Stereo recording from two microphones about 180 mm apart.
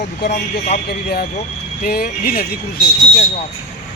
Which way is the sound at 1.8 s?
60° left (ahead or behind).